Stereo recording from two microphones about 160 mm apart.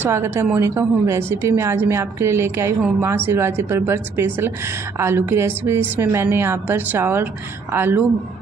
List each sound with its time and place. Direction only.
0.0 s a woman's voice: 15° right (ahead or behind)